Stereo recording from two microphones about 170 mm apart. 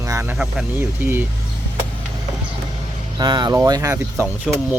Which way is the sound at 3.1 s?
25° right (ahead or behind).